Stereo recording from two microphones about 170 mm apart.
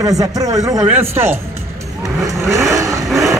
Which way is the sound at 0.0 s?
20° right (ahead or behind).